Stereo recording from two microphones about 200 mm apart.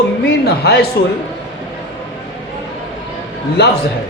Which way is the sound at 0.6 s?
55° left (ahead or behind).